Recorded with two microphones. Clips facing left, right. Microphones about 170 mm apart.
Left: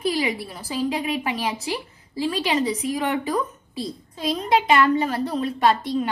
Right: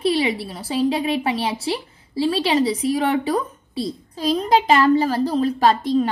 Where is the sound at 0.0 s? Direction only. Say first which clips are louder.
Right 4 dB; 30° right (ahead or behind).